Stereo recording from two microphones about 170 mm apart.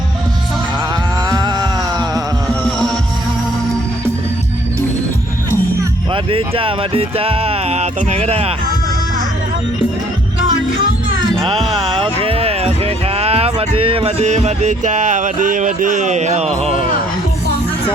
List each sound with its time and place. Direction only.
1.3 s music: 25° right (ahead or behind)
6.3 s speech: 35° right (ahead or behind)
11.9 s a sound: 30° right (ahead or behind)